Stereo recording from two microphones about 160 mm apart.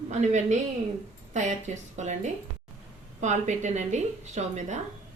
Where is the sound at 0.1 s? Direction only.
45° right (ahead or behind).